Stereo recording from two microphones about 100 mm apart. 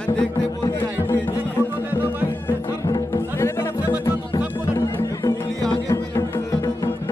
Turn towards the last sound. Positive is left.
turn(degrees=30)  # may be behind; listen again after turning